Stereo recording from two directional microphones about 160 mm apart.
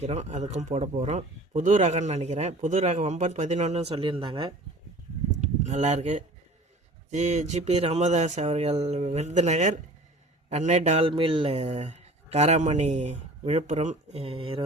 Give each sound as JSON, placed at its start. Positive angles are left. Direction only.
{"t": 0.0, "sound": "speech", "side_deg": -45}
{"t": 5.4, "sound": "speech", "side_deg": -45}